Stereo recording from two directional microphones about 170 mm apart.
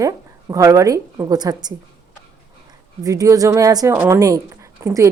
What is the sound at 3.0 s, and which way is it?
A woman's voice, 20° right (ahead or behind).